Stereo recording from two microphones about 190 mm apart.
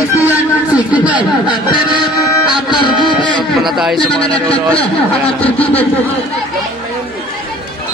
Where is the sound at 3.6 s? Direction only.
Centre (ahead or behind).